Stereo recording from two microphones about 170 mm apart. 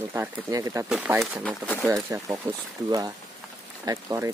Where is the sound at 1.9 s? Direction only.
15° right (ahead or behind).